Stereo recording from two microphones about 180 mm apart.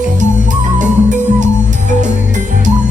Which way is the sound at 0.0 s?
45° right (ahead or behind).